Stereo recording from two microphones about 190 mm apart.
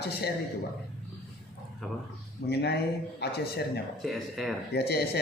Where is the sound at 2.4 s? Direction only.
60° left (ahead or behind).